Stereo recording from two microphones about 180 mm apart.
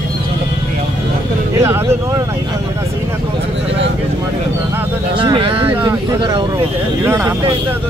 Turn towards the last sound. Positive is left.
turn(degrees=-15)  # may be behind; listen again after turning